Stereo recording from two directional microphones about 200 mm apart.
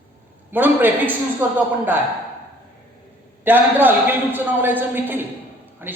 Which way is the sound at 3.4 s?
10° right (ahead or behind).